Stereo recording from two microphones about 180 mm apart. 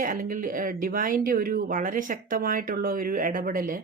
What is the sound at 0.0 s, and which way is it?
A woman's voice, 50° right (ahead or behind).